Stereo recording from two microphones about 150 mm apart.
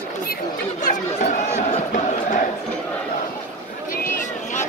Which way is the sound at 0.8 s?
55° left (ahead or behind).